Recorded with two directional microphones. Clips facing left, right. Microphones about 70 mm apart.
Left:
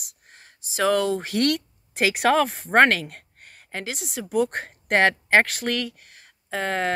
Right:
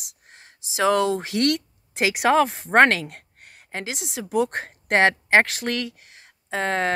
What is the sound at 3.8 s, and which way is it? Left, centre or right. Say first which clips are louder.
Speech: even; right.